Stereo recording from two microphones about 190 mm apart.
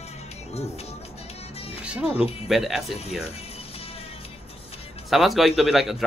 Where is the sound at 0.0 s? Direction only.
35° left (ahead or behind).